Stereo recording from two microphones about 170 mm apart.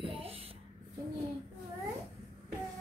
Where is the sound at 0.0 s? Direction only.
30° right (ahead or behind).